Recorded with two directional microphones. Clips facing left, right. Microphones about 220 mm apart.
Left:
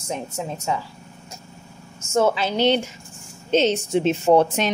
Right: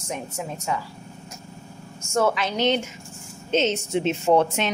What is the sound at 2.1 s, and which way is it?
A woman's voice, 25° left (ahead or behind).